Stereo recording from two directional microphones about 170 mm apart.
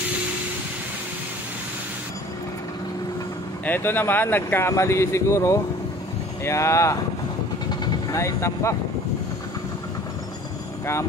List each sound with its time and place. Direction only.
3.6 s speech: 10° left (ahead or behind)